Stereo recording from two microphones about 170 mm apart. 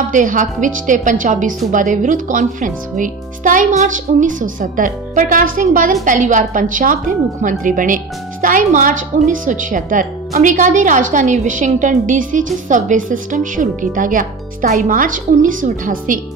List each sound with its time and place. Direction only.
0.1 s a woman's voice: 50° right (ahead or behind)